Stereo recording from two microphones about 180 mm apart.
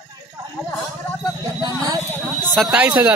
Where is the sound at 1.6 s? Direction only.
20° right (ahead or behind).